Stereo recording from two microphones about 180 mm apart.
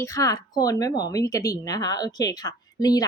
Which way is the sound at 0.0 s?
20° left (ahead or behind).